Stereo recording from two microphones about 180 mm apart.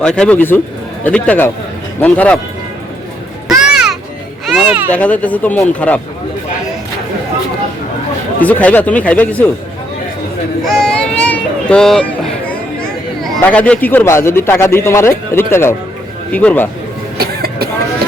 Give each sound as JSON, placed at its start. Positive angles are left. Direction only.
{"t": 0.0, "sound": "speech", "side_deg": 5}
{"t": 3.6, "sound": "music", "side_deg": -5}
{"t": 4.4, "sound": "a child's voice", "side_deg": -5}
{"t": 4.9, "sound": "speech", "side_deg": 5}
{"t": 8.4, "sound": "speech", "side_deg": 10}
{"t": 10.6, "sound": "a sound", "side_deg": 0}
{"t": 16.3, "sound": "speech", "side_deg": 10}
{"t": 17.2, "sound": "vehicle", "side_deg": -60}